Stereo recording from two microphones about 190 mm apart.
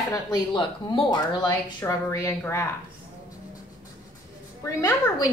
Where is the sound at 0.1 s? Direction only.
20° left (ahead or behind).